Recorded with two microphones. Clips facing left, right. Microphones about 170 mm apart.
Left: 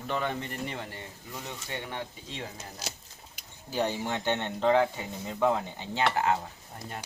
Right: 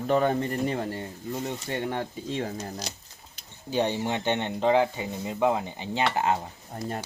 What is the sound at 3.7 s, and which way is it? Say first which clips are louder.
Speech: right 4 dB; 20° right (ahead or behind).